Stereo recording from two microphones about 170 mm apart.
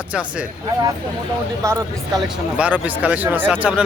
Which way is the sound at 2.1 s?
5° right (ahead or behind).